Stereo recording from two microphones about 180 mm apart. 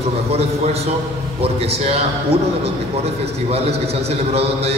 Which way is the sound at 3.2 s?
35° right (ahead or behind).